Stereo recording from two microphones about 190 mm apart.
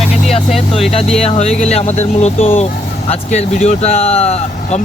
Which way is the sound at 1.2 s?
35° left (ahead or behind).